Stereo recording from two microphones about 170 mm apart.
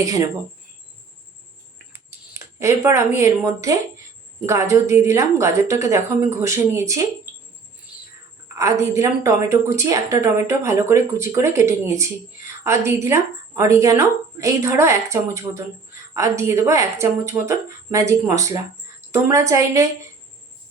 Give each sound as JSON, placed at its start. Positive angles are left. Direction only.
{"t": 0.0, "sound": "speech", "side_deg": -20}
{"t": 1.9, "sound": "a sound", "side_deg": -15}
{"t": 4.4, "sound": "speech", "side_deg": -15}
{"t": 8.5, "sound": "speech", "side_deg": -15}